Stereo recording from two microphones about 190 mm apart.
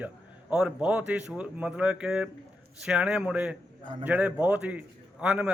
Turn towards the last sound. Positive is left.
turn(degrees=-5)  # may be behind; listen again after turning